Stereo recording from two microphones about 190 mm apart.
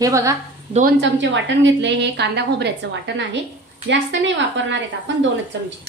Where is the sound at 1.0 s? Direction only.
70° right (ahead or behind).